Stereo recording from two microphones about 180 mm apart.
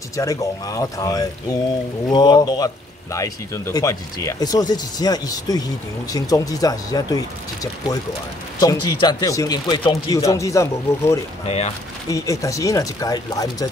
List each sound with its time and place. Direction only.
0.1 s speech: 15° left (ahead or behind)
11.4 s speech: 35° left (ahead or behind)
12.1 s speech: 20° left (ahead or behind)